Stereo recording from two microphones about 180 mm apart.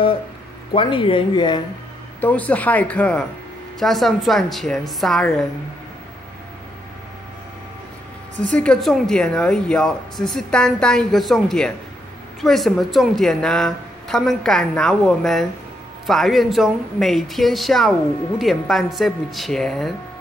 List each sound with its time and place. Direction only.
0.7 s speech: 30° left (ahead or behind)
2.1 s speech: 10° left (ahead or behind)
8.4 s speech: 5° left (ahead or behind)